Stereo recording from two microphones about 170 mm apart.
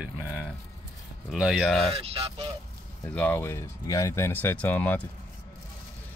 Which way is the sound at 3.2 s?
10° left (ahead or behind).